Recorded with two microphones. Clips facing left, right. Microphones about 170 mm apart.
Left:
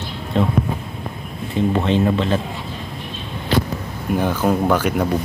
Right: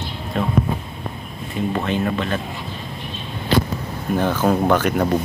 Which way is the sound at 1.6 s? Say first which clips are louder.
Left 4 dB; 30° left (ahead or behind).